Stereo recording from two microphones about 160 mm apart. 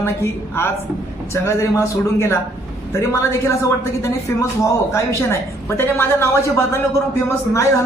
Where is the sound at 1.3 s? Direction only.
15° left (ahead or behind).